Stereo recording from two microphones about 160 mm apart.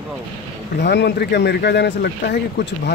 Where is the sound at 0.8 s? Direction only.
90° left.